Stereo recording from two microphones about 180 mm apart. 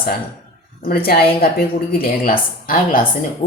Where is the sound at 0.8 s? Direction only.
55° left (ahead or behind).